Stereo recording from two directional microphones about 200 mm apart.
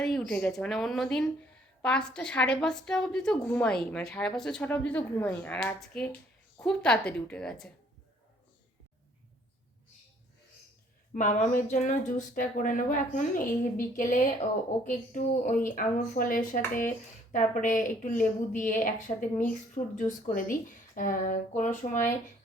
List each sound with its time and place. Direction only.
0.0 s a woman's voice: centre (ahead or behind)
11.1 s speech: 40° left (ahead or behind)